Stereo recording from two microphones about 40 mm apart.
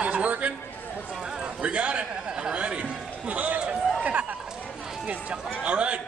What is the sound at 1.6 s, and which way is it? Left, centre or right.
A man's voice, right.